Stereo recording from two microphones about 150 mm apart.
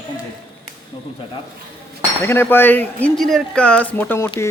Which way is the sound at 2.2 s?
15° left (ahead or behind).